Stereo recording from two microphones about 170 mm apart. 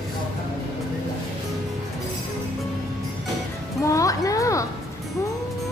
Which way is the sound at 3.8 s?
20° left (ahead or behind).